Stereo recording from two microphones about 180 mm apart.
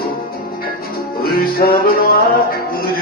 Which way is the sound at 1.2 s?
55° left (ahead or behind).